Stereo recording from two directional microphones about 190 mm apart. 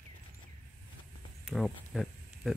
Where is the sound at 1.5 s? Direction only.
Centre (ahead or behind).